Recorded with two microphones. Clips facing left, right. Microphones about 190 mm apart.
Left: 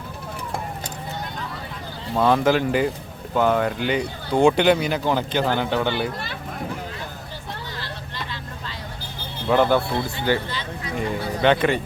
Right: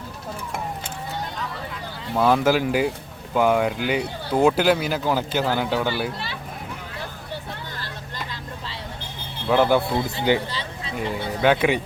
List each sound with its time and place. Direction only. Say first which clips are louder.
2.1 s speech: even; 5° right (ahead or behind)
9.5 s speech: even; 10° right (ahead or behind)
11.4 s speech: even; 5° right (ahead or behind)